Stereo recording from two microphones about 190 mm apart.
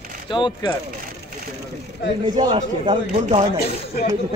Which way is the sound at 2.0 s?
25° right (ahead or behind).